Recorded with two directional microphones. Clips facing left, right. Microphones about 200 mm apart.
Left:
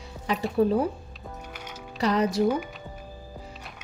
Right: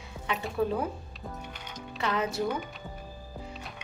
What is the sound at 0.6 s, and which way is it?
Speech, 35° left (ahead or behind).